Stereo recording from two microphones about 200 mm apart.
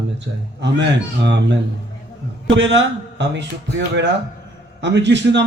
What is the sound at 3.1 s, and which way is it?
A man's voice, 60° right (ahead or behind).